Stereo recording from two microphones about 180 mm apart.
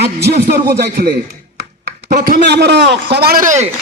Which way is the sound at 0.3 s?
60° right (ahead or behind).